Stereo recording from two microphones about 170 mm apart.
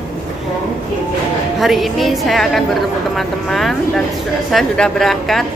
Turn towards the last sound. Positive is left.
turn(degrees=0)  # may be behind; listen again after turning